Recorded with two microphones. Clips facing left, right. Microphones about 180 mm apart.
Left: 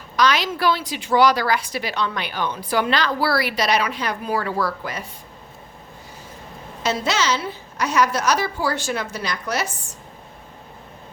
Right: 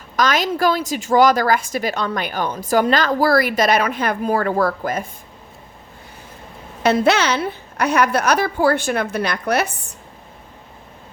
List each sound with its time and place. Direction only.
0.2 s a woman's voice: 45° right (ahead or behind)
6.8 s a woman's voice: 60° right (ahead or behind)